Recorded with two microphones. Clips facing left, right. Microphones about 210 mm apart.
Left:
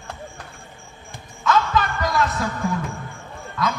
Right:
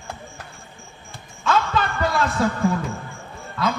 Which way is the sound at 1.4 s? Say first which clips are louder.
Left 1 dB; 30° right (ahead or behind).